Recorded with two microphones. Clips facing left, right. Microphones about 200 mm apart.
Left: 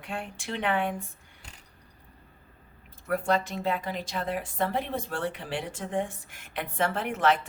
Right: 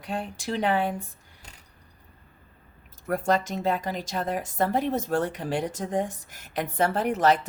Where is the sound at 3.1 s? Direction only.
40° right (ahead or behind).